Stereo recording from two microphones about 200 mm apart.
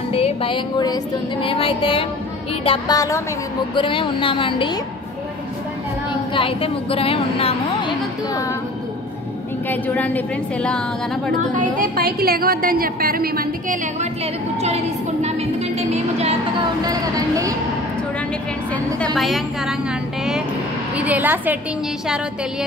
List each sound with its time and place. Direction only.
0.1 s music: 30° left (ahead or behind)
6.3 s music: 25° left (ahead or behind)
9.7 s a woman's voice: 10° left (ahead or behind)
11.5 s a woman's voice: 40° right (ahead or behind)
15.2 s music: 30° right (ahead or behind)
16.8 s speech: 20° right (ahead or behind)
19.1 s a woman's voice: centre (ahead or behind)
20.9 s speech: 5° right (ahead or behind)